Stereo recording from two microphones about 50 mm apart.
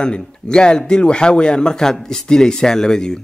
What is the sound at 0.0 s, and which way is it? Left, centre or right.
A man's voice, centre.